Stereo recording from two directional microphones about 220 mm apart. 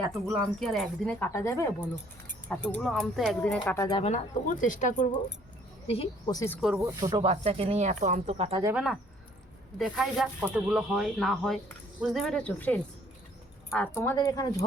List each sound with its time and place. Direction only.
0.1 s speech: centre (ahead or behind)
3.8 s speech: 25° left (ahead or behind)
5.9 s a woman's voice: 25° left (ahead or behind)
6.6 s speech: 5° right (ahead or behind)
7.0 s speech: 20° right (ahead or behind)
8.6 s speech: 5° right (ahead or behind); by 14.6 s 15° left (ahead or behind)